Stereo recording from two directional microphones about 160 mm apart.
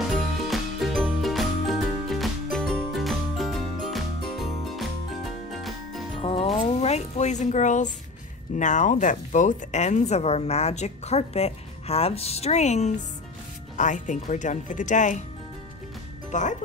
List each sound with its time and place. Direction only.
0.5 s music: centre (ahead or behind)
6.2 s music: 35° left (ahead or behind)
8.5 s speech: 50° left (ahead or behind)
16.3 s speech: 50° left (ahead or behind)